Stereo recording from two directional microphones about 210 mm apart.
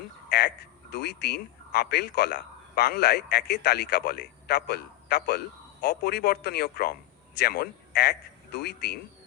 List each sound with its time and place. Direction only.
0.3 s a man's voice: 50° left (ahead or behind)